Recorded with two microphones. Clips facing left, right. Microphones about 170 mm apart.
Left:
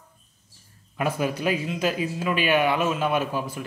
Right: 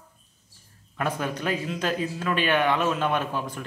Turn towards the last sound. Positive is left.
turn(degrees=5)  # may be behind; listen again after turning